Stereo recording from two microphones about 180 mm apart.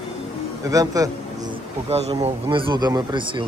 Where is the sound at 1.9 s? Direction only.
35° right (ahead or behind).